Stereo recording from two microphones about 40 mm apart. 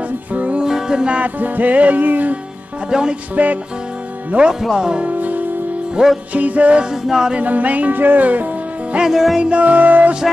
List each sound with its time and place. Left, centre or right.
0.3 s music: right
0.6 s music: centre
1.2 s music: right
2.9 s music: centre
3.4 s music: right
4.7 s music: centre
5.0 s music: right
6.0 s music: right
6.3 s music: right
6.8 s music: centre
7.3 s music: right
9.1 s music: centre
9.4 s music: right